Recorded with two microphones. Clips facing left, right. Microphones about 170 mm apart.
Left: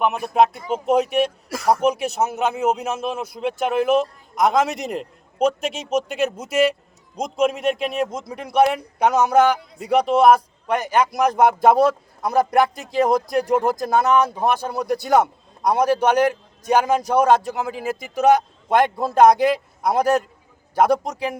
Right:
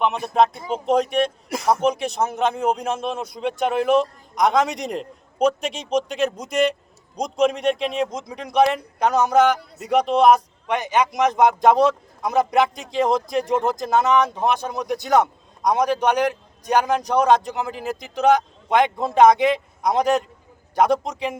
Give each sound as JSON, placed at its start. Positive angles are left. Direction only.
{"t": 0.3, "sound": "speech", "side_deg": 5}
{"t": 1.5, "sound": "speech", "side_deg": -20}
{"t": 1.9, "sound": "a man's voice", "side_deg": 5}
{"t": 10.8, "sound": "speech", "side_deg": -20}
{"t": 11.1, "sound": "a man's voice", "side_deg": 5}